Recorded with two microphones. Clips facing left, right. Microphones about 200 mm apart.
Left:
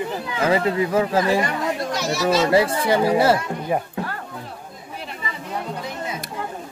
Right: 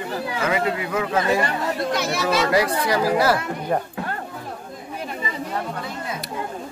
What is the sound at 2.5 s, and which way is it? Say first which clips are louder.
Speech: left 2 dB; 25° left (ahead or behind).